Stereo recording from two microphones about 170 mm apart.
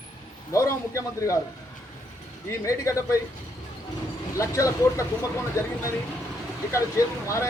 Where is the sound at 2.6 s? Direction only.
20° left (ahead or behind).